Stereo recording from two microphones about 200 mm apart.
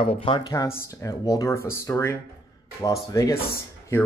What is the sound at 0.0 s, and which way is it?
Speech, 25° left (ahead or behind).